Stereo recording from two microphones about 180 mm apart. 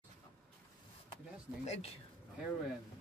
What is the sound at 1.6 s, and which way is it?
Speech, 35° left (ahead or behind).